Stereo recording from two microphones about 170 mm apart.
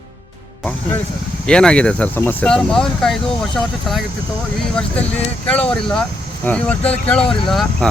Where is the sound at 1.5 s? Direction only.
5° left (ahead or behind).